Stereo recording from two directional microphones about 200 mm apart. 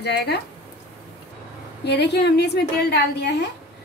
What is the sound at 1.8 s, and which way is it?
A woman's voice, 55° left (ahead or behind).